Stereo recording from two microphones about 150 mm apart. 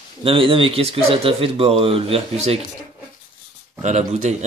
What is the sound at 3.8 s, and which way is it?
Speech, 50° right (ahead or behind).